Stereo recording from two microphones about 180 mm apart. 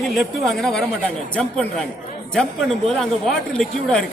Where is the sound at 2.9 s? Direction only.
5° left (ahead or behind).